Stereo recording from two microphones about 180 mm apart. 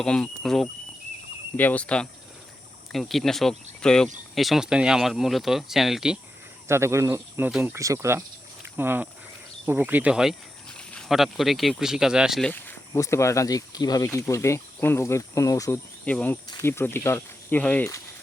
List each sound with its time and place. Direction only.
0.0 s speech: 5° left (ahead or behind)
6.7 s speech: 15° right (ahead or behind)
12.5 s speech: 15° left (ahead or behind)
16.0 s speech: 10° left (ahead or behind)